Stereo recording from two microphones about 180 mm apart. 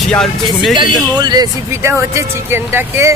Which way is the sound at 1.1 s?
20° right (ahead or behind).